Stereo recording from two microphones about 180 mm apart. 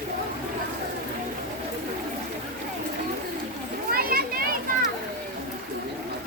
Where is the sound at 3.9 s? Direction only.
55° right (ahead or behind).